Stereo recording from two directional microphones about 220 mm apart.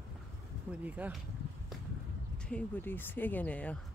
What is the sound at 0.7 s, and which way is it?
Speech, 5° right (ahead or behind).